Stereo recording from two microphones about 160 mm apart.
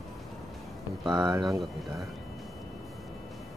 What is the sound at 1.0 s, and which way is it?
Speech, 20° right (ahead or behind).